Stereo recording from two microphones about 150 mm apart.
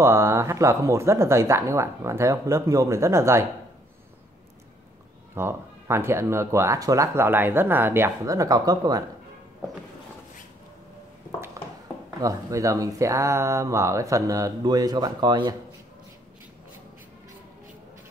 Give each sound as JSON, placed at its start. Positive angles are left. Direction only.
{"t": 0.0, "sound": "speech", "side_deg": -20}
{"t": 5.3, "sound": "speech", "side_deg": -15}
{"t": 12.2, "sound": "speech", "side_deg": -20}